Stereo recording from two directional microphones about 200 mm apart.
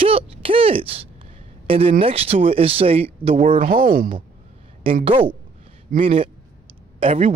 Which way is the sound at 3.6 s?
45° right (ahead or behind).